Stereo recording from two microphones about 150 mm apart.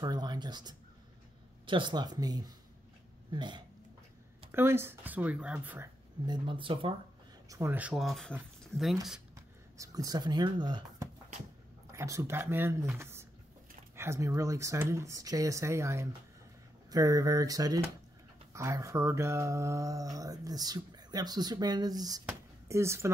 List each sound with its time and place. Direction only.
0.0 s speech: 30° right (ahead or behind)
4.5 s speech: 15° right (ahead or behind)
6.2 s speech: 30° right (ahead or behind)
7.4 s speech: 20° right (ahead or behind)
7.7 s speech: 5° right (ahead or behind)
9.8 s speech: 25° right (ahead or behind)
11.9 s speech: 20° right (ahead or behind)
12.9 s a sound: 15° right (ahead or behind)
13.9 s speech: 15° right (ahead or behind)